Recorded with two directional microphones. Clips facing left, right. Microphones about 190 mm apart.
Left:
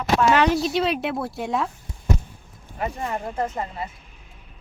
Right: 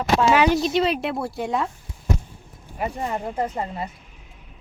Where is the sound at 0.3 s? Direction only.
5° right (ahead or behind).